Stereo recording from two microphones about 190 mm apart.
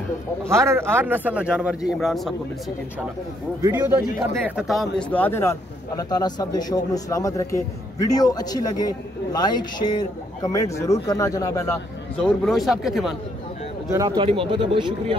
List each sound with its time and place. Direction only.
0.5 s a man's voice: 15° right (ahead or behind)
3.6 s a man's voice: 15° right (ahead or behind)
4.5 s speech: centre (ahead or behind); by 11.7 s 15° left (ahead or behind)
12.2 s speech: centre (ahead or behind)
13.9 s speech: 25° right (ahead or behind)